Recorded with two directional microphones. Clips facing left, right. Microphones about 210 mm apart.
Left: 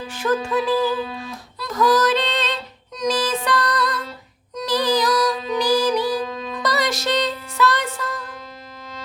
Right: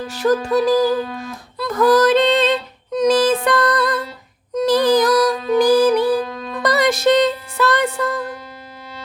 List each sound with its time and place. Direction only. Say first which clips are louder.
0.1 s music: right 5 dB; 40° right (ahead or behind)
1.5 s female singing: right 5 dB; 55° right (ahead or behind)
2.9 s music: right 8 dB; 55° right (ahead or behind)